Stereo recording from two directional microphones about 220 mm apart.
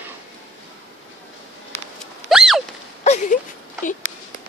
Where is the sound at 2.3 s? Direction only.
Centre (ahead or behind).